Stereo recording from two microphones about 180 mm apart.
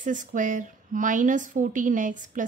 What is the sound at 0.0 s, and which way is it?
A woman's voice, 45° right (ahead or behind).